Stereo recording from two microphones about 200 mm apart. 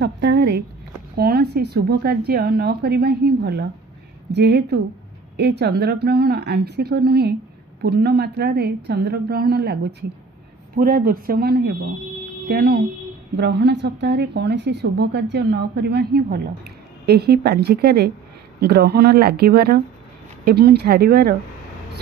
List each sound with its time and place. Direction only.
0.0 s a sound: 60° right (ahead or behind)
1.1 s a woman's voice: 50° right (ahead or behind)
10.8 s a woman's voice: 45° right (ahead or behind)